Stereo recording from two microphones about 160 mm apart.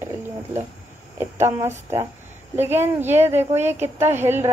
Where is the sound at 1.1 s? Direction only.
15° right (ahead or behind).